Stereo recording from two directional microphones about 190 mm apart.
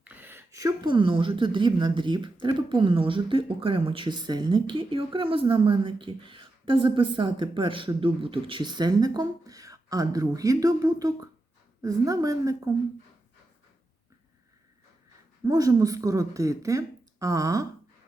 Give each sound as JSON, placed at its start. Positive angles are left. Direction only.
{"t": 0.0, "sound": "speech", "side_deg": -10}
{"t": 15.4, "sound": "speech", "side_deg": -20}